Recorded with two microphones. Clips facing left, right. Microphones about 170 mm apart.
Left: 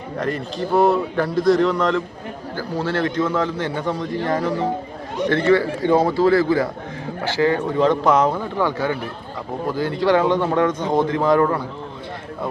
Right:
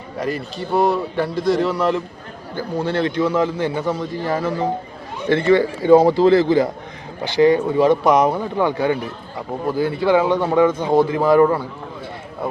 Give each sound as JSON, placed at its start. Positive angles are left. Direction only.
{"t": 0.2, "sound": "a man's voice", "side_deg": -5}